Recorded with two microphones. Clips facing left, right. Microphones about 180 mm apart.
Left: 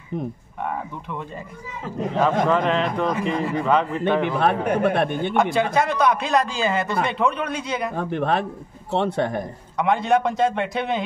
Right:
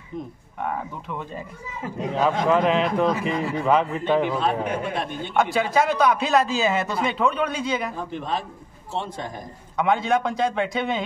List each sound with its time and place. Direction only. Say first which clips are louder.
1.8 s speech: left 2 dB; 5° right (ahead or behind)
4.0 s speech: left 1 dB; 60° left (ahead or behind)
5.3 s speech: right 2 dB; centre (ahead or behind)
7.9 s speech: left 6 dB; 60° left (ahead or behind)
9.8 s speech: left 2 dB; centre (ahead or behind)